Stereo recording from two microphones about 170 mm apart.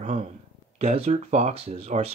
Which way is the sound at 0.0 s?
45° right (ahead or behind).